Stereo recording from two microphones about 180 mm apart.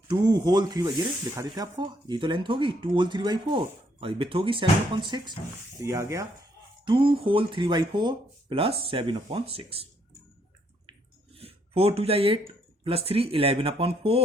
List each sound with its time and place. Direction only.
0.1 s speech: 25° right (ahead or behind)
6.8 s speech: 30° right (ahead or behind)
11.3 s speech: 30° right (ahead or behind)